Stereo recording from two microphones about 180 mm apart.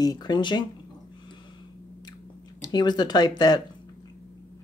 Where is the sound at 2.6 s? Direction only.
25° left (ahead or behind).